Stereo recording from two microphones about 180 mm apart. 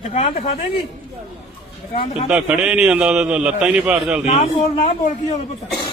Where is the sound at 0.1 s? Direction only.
35° left (ahead or behind).